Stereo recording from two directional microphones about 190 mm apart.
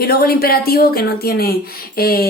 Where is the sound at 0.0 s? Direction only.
55° left (ahead or behind).